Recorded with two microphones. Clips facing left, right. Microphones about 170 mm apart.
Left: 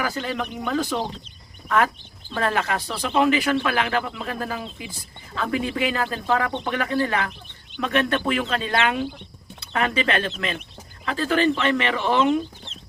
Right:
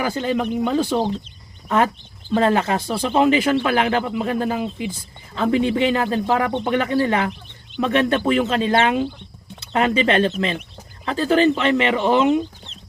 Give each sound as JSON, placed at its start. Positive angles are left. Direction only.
{"t": 0.0, "sound": "speech", "side_deg": -25}